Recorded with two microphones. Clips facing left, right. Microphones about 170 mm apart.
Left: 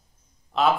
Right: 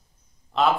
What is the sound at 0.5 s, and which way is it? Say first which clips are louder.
Speech: even; centre (ahead or behind).